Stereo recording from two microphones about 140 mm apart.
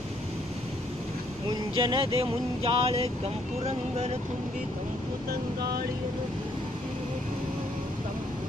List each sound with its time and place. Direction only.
1.8 s speech: 35° right (ahead or behind); by 4.2 s 50° right (ahead or behind)